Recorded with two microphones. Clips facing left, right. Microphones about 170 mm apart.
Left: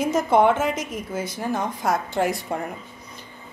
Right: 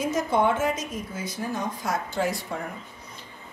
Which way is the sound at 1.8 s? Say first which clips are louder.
Left 5 dB; 55° left (ahead or behind).